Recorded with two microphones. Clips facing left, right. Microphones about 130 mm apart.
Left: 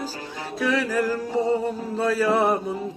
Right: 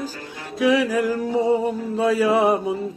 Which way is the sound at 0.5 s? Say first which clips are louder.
Right 5 dB; 15° right (ahead or behind).